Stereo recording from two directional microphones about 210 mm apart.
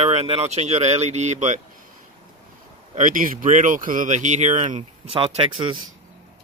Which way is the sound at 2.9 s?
40° right (ahead or behind).